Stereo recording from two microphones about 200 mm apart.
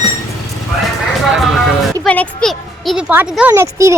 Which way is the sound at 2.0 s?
5° left (ahead or behind).